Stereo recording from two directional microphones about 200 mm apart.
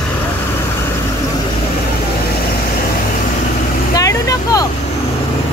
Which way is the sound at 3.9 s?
15° left (ahead or behind).